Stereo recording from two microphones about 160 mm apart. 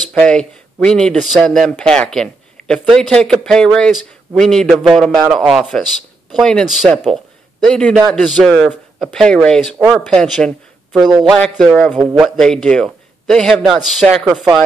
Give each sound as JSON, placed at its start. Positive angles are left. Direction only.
{"t": 0.1, "sound": "speech", "side_deg": 5}
{"t": 11.1, "sound": "a man's voice", "side_deg": -25}
{"t": 11.5, "sound": "speech", "side_deg": 5}
{"t": 12.0, "sound": "speech", "side_deg": -10}
{"t": 12.4, "sound": "speech", "side_deg": 5}